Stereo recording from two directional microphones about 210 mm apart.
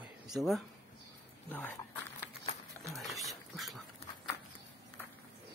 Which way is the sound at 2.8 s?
Centre (ahead or behind).